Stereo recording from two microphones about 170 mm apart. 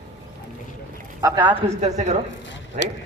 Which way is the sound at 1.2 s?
25° right (ahead or behind).